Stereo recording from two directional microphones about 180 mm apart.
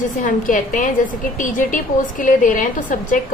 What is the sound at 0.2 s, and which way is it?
A woman's voice, 50° left (ahead or behind).